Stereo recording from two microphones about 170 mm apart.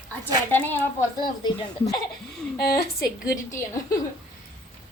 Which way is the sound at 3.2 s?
15° left (ahead or behind).